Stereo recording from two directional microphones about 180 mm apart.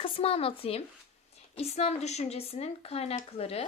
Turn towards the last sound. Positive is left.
turn(degrees=35)  # may be behind; listen again after turning